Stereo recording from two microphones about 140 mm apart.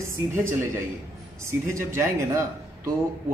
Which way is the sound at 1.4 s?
20° right (ahead or behind).